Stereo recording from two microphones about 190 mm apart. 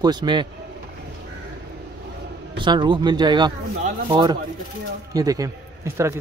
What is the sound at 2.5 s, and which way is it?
A man's voice, 25° right (ahead or behind).